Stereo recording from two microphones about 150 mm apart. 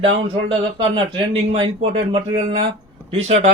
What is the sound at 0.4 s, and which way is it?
A man's voice, 35° right (ahead or behind).